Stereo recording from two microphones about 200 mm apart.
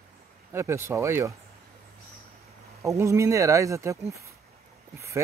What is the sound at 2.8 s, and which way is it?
Speech, 15° right (ahead or behind).